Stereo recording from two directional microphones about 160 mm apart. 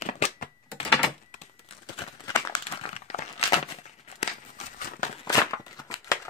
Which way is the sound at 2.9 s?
40° left (ahead or behind).